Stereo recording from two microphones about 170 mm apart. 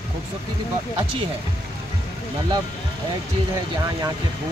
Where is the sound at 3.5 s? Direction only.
20° right (ahead or behind).